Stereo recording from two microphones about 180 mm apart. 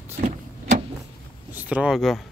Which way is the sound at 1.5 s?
10° right (ahead or behind).